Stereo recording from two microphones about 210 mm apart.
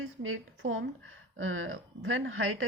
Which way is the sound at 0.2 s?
70° right (ahead or behind).